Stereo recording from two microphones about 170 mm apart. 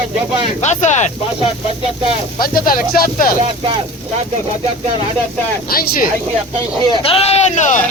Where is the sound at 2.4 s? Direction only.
60° left (ahead or behind).